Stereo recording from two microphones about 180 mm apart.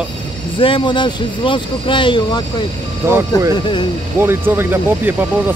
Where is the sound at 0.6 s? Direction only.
30° left (ahead or behind).